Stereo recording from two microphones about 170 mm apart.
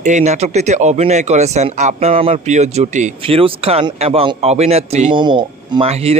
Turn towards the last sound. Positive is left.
turn(degrees=-35)  # may be behind; listen again after turning